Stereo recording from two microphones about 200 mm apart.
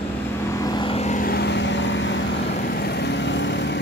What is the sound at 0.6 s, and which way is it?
Vehicle, 20° left (ahead or behind).